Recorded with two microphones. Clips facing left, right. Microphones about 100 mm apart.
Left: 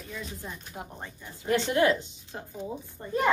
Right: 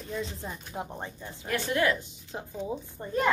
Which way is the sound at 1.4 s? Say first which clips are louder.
Left 3 dB; 25° left (ahead or behind).